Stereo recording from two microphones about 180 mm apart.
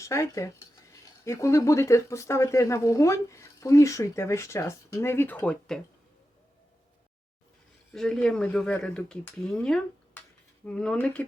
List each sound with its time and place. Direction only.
0.0 s speech: 15° left (ahead or behind)
7.9 s speech: 5° left (ahead or behind)